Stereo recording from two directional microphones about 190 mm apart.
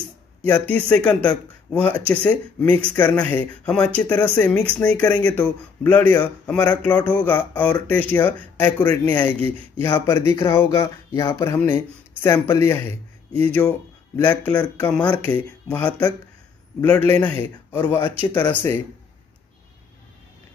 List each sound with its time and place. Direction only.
0.5 s speech: 5° left (ahead or behind)